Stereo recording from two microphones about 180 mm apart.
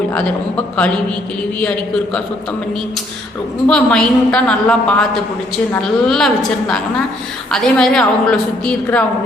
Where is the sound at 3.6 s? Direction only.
5° left (ahead or behind).